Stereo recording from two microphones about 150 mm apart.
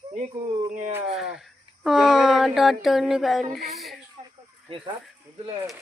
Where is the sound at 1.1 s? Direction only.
5° right (ahead or behind).